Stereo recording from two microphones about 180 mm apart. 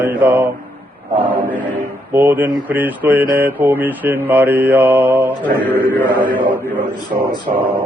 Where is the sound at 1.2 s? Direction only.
10° right (ahead or behind).